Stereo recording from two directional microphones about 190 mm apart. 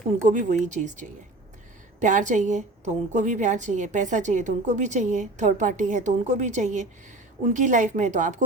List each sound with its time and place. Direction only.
0.3 s a woman's voice: 40° right (ahead or behind)